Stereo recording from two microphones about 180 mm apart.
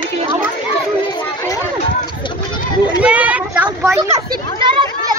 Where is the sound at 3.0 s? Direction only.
10° right (ahead or behind).